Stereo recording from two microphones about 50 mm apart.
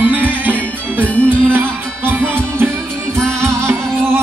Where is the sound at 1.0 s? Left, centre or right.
Left.